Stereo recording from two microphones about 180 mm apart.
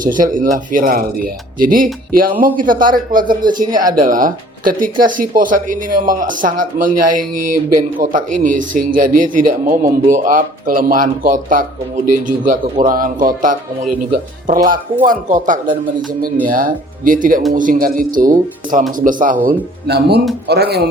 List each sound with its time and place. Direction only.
0.0 s speech: 50° right (ahead or behind)
12.8 s speech: 50° right (ahead or behind)
19.9 s speech: 65° right (ahead or behind)